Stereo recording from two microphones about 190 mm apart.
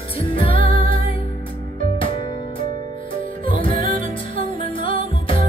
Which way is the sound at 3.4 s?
30° left (ahead or behind).